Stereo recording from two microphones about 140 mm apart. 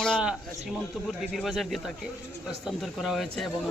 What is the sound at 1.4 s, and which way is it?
Speech, centre (ahead or behind).